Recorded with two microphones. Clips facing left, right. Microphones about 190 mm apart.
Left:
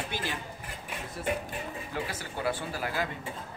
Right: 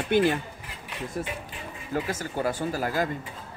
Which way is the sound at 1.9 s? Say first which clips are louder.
Right 9 dB; 45° right (ahead or behind).